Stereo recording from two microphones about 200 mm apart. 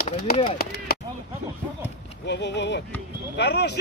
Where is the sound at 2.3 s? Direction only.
60° left (ahead or behind).